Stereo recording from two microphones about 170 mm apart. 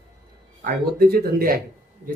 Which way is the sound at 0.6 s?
60° right (ahead or behind).